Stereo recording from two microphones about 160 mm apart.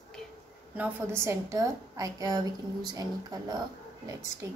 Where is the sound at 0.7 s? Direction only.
10° right (ahead or behind).